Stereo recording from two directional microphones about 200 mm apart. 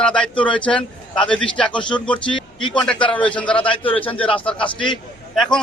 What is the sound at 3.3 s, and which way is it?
A man's voice, 5° left (ahead or behind).